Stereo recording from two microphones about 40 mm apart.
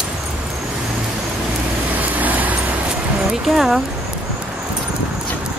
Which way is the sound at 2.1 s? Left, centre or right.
Right.